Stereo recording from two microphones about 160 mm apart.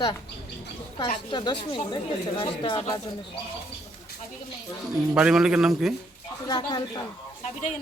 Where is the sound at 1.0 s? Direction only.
30° left (ahead or behind).